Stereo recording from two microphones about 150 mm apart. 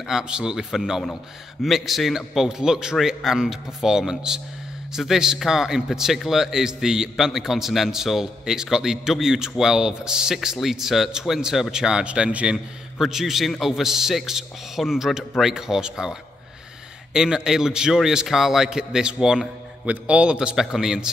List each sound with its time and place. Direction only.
0.0 s a man's voice: 5° right (ahead or behind)